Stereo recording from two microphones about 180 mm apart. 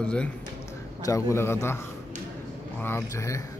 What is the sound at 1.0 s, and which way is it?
Speech, 15° left (ahead or behind).